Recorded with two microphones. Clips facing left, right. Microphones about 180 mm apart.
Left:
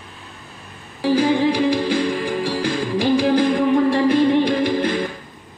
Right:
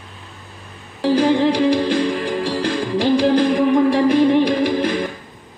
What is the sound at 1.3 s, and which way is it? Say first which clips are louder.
Music: right 2 dB; 10° left (ahead or behind).